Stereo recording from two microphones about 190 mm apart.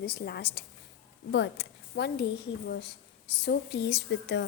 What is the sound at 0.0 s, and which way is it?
A woman's voice, 55° left (ahead or behind).